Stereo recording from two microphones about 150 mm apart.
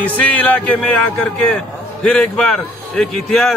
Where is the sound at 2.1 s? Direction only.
5° left (ahead or behind).